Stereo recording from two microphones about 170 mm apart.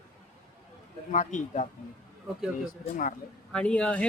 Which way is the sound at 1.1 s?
45° left (ahead or behind).